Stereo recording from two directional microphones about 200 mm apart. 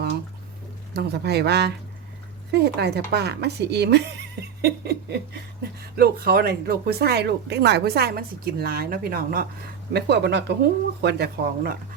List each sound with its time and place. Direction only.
0.9 s a woman's voice: 55° right (ahead or behind)